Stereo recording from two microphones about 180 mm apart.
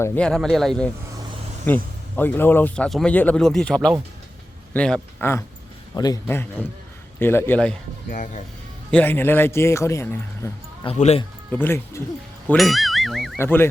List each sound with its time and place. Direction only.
0.0 s a man's voice: 5° left (ahead or behind); by 6.1 s 20° left (ahead or behind)
6.2 s speech: 10° left (ahead or behind)
8.1 s speech: 45° left (ahead or behind)
8.9 s speech: 10° left (ahead or behind)
10.8 s speech: 35° left (ahead or behind)
11.5 s speech: 10° left (ahead or behind)
12.5 s speech: centre (ahead or behind)
13.4 s speech: 10° left (ahead or behind)